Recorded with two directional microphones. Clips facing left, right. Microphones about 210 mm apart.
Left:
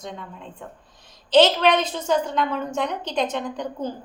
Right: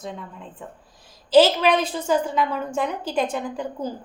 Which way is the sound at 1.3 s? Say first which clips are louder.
Right 1 dB; 5° right (ahead or behind).